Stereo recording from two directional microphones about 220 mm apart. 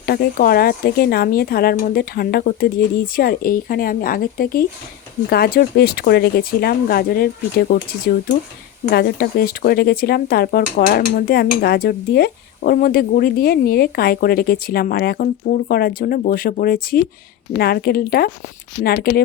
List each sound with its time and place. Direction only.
0.0 s a woman's voice: 45° left (ahead or behind)